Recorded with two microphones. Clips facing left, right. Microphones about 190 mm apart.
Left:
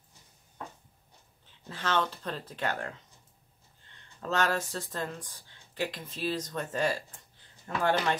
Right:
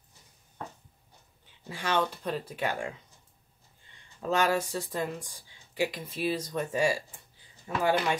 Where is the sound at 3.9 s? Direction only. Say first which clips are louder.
Right 2 dB; 10° right (ahead or behind).